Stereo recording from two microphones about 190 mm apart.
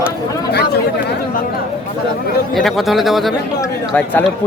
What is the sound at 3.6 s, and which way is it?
Speech, 10° left (ahead or behind).